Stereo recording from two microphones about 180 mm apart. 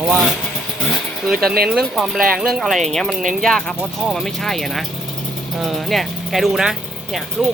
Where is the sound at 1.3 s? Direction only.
60° right (ahead or behind).